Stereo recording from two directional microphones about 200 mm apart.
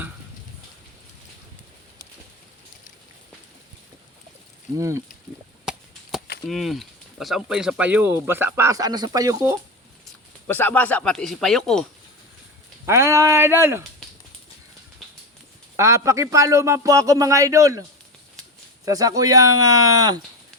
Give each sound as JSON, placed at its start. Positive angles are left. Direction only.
{"t": 4.8, "sound": "speech", "side_deg": -15}
{"t": 5.6, "sound": "chop", "side_deg": 0}
{"t": 6.5, "sound": "speech", "side_deg": 0}
{"t": 10.4, "sound": "speech", "side_deg": 10}
{"t": 12.8, "sound": "speech", "side_deg": -15}
{"t": 15.7, "sound": "speech", "side_deg": -15}
{"t": 18.9, "sound": "speech", "side_deg": -15}